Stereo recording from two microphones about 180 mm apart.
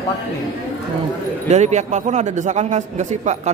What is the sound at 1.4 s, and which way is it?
A man's voice, 40° right (ahead or behind).